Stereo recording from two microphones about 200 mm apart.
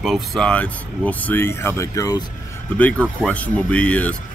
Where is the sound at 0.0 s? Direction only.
Centre (ahead or behind); by 2.2 s 15° left (ahead or behind).